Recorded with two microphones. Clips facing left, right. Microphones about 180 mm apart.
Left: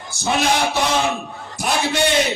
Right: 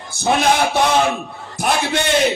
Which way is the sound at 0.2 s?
55° right (ahead or behind).